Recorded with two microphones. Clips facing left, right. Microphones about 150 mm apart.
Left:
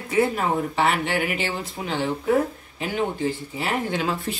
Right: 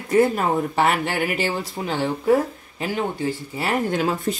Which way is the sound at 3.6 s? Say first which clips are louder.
Right 4 dB; 45° right (ahead or behind).